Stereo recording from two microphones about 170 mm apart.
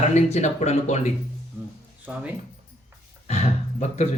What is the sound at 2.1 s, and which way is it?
Speech, 10° right (ahead or behind).